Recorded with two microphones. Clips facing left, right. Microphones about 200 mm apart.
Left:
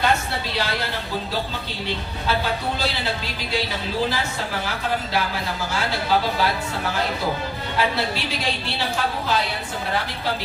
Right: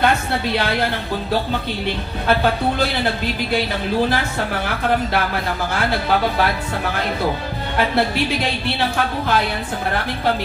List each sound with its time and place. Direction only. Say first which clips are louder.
0.0 s speech: right 4 dB; 60° right (ahead or behind)
2.2 s speech: right 6 dB; 55° right (ahead or behind)
4.1 s speech: right 5 dB; 55° right (ahead or behind)